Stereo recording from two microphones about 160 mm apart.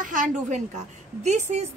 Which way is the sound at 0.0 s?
55° right (ahead or behind).